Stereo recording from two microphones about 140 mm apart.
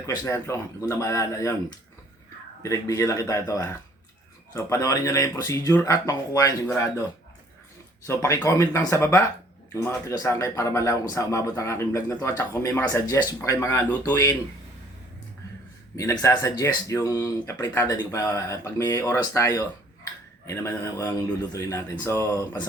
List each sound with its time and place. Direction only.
0.0 s speech: 20° left (ahead or behind)
2.6 s speech: 20° left (ahead or behind)
8.0 s speech: 20° left (ahead or behind)
16.0 s speech: 20° left (ahead or behind)